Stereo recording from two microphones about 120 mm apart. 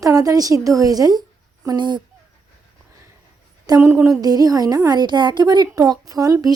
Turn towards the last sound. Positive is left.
turn(degrees=-30)  # may be behind; listen again after turning